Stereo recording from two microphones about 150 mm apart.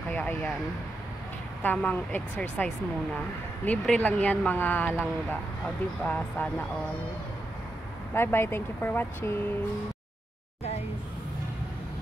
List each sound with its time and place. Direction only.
0.1 s speech: 10° left (ahead or behind)
1.6 s speech: 10° left (ahead or behind)
6.0 s speech: 10° left (ahead or behind)
8.1 s speech: 15° left (ahead or behind)